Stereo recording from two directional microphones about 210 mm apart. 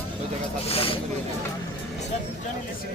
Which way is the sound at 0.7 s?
25° left (ahead or behind).